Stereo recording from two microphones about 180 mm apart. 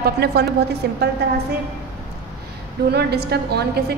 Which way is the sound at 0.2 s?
60° right (ahead or behind).